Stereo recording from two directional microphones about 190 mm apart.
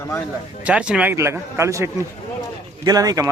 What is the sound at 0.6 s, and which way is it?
A man's voice, 5° right (ahead or behind).